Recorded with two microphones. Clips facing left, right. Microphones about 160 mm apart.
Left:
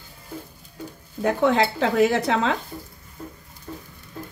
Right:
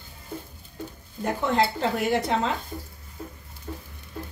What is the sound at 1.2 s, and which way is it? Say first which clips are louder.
Speech: left 4 dB; 80° left.